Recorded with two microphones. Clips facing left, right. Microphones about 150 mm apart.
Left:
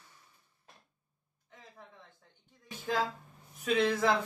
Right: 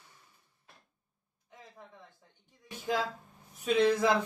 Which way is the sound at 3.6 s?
15° right (ahead or behind).